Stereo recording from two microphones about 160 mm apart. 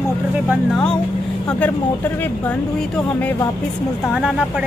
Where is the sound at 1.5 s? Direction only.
10° left (ahead or behind).